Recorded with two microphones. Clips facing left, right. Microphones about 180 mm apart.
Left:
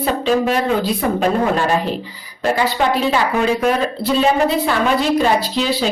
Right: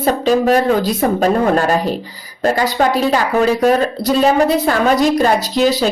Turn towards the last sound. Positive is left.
turn(degrees=-45)  # may be behind; listen again after turning